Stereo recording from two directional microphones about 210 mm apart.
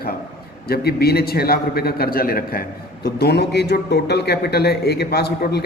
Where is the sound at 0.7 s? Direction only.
50° left (ahead or behind).